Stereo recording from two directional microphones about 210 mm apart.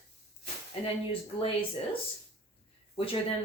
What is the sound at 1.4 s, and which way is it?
Speech, 25° left (ahead or behind).